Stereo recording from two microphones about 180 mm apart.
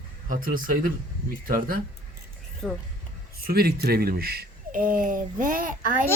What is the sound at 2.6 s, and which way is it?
Speech, 5° left (ahead or behind).